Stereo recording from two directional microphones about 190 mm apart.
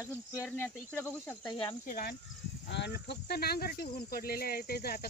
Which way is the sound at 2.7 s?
65° left (ahead or behind).